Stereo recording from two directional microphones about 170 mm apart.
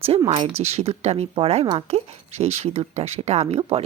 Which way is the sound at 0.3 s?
35° right (ahead or behind).